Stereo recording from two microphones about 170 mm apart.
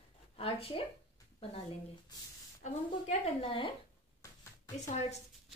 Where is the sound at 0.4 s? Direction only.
35° left (ahead or behind).